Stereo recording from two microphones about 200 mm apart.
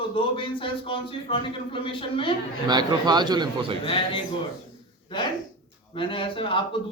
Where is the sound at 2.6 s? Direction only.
20° right (ahead or behind).